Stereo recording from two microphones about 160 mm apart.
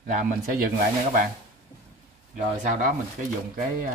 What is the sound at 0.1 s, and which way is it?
Speech, 60° right (ahead or behind).